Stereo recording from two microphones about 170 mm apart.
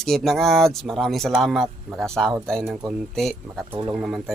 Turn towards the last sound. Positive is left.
turn(degrees=-5)  # may be behind; listen again after turning